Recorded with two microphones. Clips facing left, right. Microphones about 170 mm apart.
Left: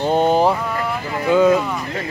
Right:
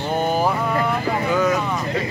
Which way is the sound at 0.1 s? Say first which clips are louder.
Left 5 dB; 25° left (ahead or behind).